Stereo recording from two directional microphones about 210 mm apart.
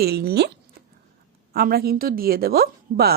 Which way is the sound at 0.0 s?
50° right (ahead or behind).